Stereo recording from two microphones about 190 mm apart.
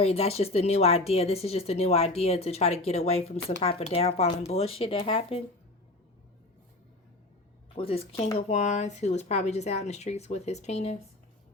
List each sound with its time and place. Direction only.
0.0 s a woman's voice: 30° left (ahead or behind)
7.8 s a woman's voice: 30° left (ahead or behind)